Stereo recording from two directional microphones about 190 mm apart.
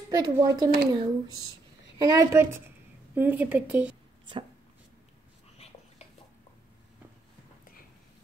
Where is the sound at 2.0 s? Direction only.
20° right (ahead or behind).